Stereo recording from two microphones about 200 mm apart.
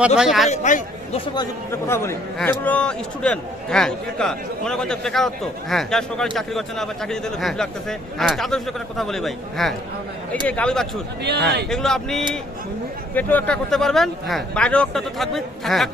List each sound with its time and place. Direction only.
0.2 s a man's voice: centre (ahead or behind)
0.5 s a man's voice: 35° left (ahead or behind)
1.3 s a man's voice: 15° left (ahead or behind)
11.2 s a man's voice: 55° right (ahead or behind)
11.7 s a man's voice: centre (ahead or behind)